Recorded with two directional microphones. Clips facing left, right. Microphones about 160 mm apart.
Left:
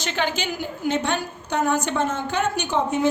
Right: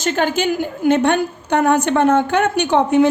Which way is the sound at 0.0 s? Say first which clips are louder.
Right 8 dB; 45° right (ahead or behind).